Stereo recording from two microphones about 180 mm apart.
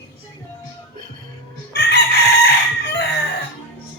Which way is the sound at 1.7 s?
60° left (ahead or behind).